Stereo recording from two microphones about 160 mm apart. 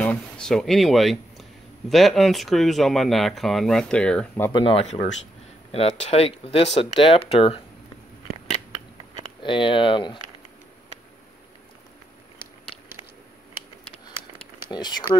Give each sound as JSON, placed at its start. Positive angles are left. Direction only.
{"t": 0.0, "sound": "speech", "side_deg": 5}
{"t": 4.5, "sound": "speech", "side_deg": 30}
{"t": 4.8, "sound": "speech", "side_deg": 45}
{"t": 9.4, "sound": "speech", "side_deg": 30}
{"t": 14.7, "sound": "speech", "side_deg": 25}